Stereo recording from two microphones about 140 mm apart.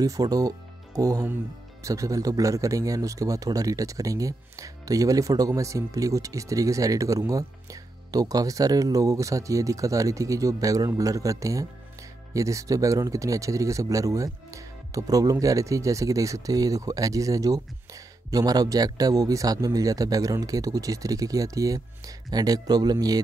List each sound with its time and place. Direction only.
0.0 s speech: 25° right (ahead or behind)